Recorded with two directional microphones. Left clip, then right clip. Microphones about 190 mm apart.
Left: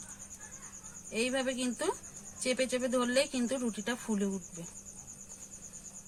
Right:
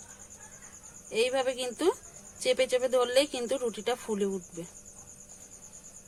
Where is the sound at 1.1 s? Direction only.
45° right (ahead or behind).